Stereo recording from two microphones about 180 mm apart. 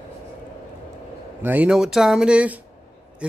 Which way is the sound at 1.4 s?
10° right (ahead or behind).